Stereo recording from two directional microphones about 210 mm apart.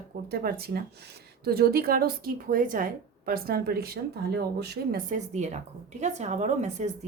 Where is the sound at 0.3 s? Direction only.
45° right (ahead or behind).